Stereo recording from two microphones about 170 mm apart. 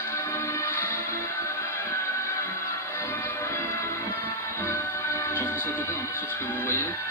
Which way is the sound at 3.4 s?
15° left (ahead or behind).